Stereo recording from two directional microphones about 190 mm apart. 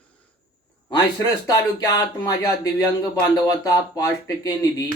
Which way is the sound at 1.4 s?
20° left (ahead or behind).